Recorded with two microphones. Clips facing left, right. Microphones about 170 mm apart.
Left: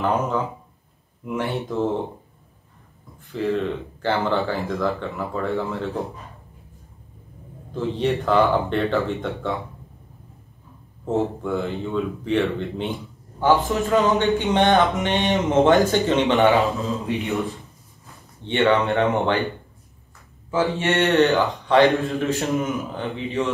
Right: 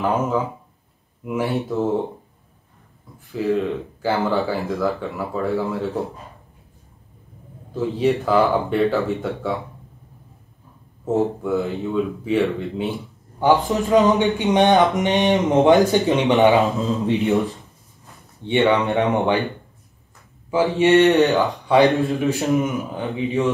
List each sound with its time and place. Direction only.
0.0 s speech: 5° right (ahead or behind)
3.3 s speech: 5° right (ahead or behind)
7.7 s speech: 5° right (ahead or behind)
11.1 s speech: 5° right (ahead or behind)
13.4 s speech: 15° right (ahead or behind)
18.4 s speech: 15° right (ahead or behind)
20.5 s speech: 15° right (ahead or behind)